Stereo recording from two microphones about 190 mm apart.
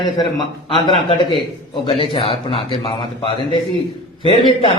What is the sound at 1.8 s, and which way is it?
A man's voice, 30° left (ahead or behind).